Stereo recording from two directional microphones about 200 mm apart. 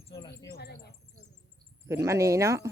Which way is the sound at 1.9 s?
15° right (ahead or behind).